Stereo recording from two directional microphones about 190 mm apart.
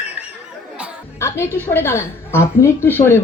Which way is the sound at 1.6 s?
10° left (ahead or behind).